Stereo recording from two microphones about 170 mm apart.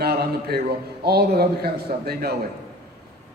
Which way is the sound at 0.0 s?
65° right (ahead or behind).